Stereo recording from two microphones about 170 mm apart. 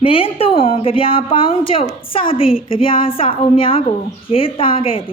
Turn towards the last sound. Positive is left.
turn(degrees=30)  # may be behind; listen again after turning